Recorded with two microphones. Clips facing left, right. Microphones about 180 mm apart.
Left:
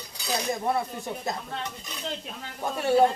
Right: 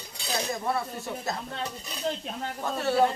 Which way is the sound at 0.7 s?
20° left (ahead or behind).